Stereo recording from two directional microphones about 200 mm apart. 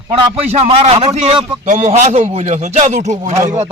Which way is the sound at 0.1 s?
30° right (ahead or behind).